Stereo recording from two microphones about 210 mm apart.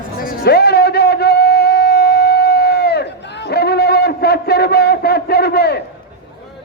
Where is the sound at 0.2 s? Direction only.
45° left (ahead or behind).